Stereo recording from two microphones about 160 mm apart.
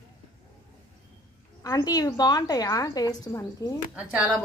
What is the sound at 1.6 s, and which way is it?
A woman's voice, 25° left (ahead or behind).